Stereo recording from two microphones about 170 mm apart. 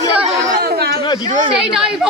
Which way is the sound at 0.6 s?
65° right (ahead or behind).